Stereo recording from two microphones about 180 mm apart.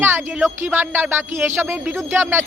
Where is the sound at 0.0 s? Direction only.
15° right (ahead or behind).